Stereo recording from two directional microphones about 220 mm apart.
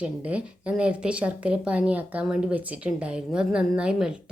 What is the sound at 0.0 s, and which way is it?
A woman's voice, 5° right (ahead or behind).